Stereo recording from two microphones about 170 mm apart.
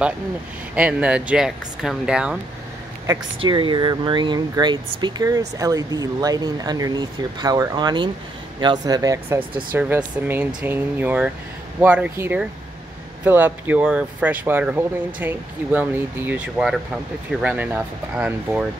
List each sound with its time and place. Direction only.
0.7 s speech: 10° right (ahead or behind)
3.3 s speech: 30° right (ahead or behind)
9.8 s speech: 10° right (ahead or behind)